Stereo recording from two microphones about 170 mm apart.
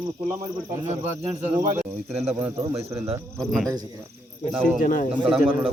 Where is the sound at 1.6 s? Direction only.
50° right (ahead or behind).